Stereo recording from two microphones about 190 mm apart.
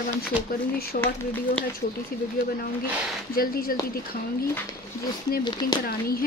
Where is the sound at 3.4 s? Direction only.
50° left (ahead or behind).